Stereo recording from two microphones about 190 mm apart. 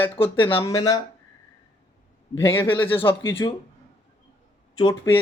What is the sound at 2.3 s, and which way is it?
A man's voice, 15° left (ahead or behind).